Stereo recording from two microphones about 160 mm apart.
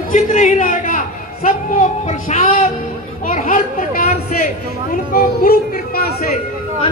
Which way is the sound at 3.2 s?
55° left (ahead or behind).